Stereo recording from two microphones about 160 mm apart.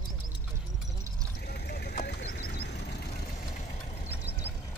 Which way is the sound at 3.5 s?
50° left (ahead or behind).